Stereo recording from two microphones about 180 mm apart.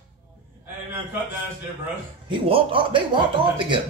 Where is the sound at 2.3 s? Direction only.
30° right (ahead or behind).